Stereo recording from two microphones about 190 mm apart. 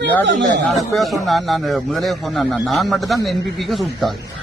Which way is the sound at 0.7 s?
Centre (ahead or behind).